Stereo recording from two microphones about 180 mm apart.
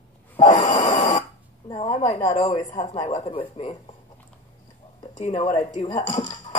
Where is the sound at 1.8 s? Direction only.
35° left (ahead or behind).